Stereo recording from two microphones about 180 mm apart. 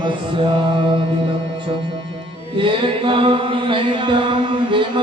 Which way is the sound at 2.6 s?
30° right (ahead or behind).